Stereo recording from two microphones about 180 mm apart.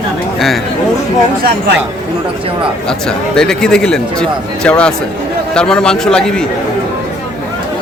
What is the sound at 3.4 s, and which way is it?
Speech, 5° left (ahead or behind).